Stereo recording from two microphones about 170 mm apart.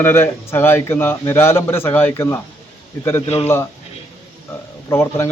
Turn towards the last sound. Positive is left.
turn(degrees=15)  # may be behind; listen again after turning